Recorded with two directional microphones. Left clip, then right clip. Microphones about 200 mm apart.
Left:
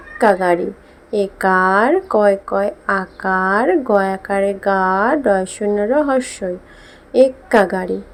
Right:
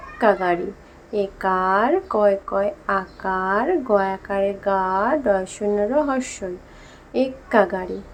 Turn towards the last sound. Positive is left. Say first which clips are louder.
# left 4 dB
turn(degrees=20)  # may be behind; listen again after turning